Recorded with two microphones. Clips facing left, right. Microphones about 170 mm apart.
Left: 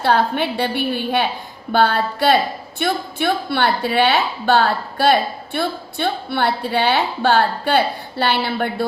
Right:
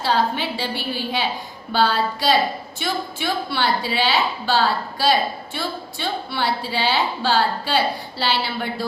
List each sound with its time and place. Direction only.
0.0 s a woman's voice: 60° left (ahead or behind)